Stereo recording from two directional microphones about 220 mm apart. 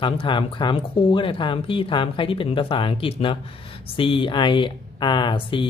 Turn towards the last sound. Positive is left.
turn(degrees=20)  # may be behind; listen again after turning